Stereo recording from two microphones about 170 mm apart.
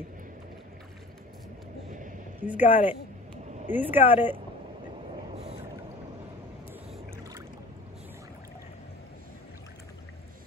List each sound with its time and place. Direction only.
1.9 s vehicle: 50° right (ahead or behind)
2.4 s speech: 10° right (ahead or behind)